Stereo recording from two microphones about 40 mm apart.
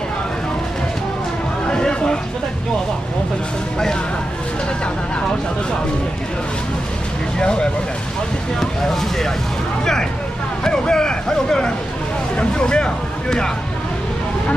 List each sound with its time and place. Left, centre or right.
1.7 s a sound: left
7.3 s speech: left
10.6 s vehicle: centre
12.4 s speech: left